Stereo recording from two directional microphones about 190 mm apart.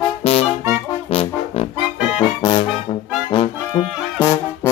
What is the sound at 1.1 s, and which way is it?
Trombone, 30° left (ahead or behind).